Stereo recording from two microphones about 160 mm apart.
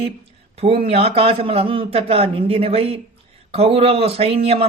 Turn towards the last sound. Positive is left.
turn(degrees=-35)  # may be behind; listen again after turning